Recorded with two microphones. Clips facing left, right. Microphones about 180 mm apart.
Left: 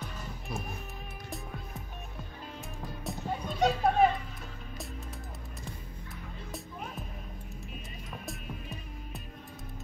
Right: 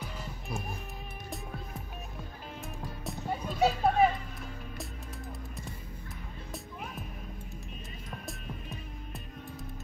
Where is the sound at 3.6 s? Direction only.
5° right (ahead or behind).